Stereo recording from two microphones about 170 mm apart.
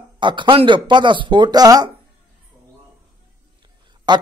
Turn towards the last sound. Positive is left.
turn(degrees=-25)  # may be behind; listen again after turning